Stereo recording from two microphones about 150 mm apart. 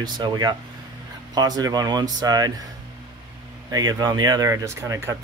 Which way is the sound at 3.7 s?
25° right (ahead or behind).